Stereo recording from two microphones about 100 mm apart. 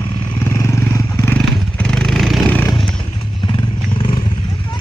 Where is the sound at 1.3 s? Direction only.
10° left (ahead or behind).